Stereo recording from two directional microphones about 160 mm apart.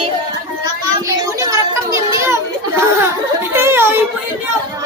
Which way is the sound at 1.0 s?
20° right (ahead or behind).